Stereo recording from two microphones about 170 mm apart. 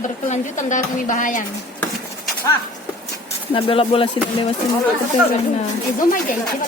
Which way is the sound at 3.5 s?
30° left (ahead or behind).